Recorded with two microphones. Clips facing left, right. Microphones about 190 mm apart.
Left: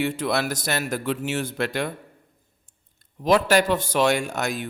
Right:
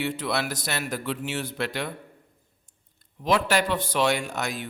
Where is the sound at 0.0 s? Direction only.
45° left (ahead or behind).